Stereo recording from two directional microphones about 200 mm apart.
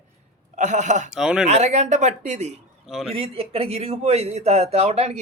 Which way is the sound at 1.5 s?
35° right (ahead or behind).